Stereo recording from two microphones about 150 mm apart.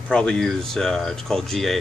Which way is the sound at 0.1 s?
5° left (ahead or behind).